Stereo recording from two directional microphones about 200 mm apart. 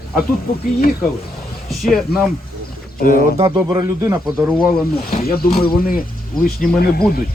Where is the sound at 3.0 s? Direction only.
45° left (ahead or behind).